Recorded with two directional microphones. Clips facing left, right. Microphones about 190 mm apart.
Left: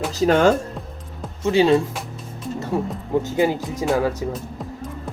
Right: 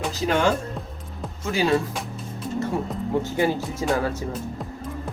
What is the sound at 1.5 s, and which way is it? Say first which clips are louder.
Speech: left 6 dB; 25° left (ahead or behind).